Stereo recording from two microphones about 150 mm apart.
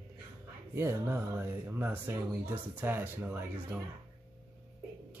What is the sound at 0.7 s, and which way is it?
Speech, 15° right (ahead or behind).